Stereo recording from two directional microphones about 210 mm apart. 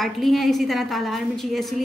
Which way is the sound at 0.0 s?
Centre (ahead or behind).